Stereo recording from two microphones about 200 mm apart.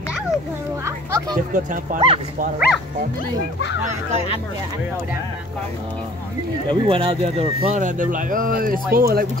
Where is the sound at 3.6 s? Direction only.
65° left (ahead or behind).